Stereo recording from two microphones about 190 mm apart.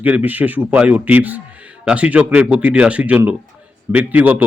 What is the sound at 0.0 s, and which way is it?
A man's voice, 10° right (ahead or behind).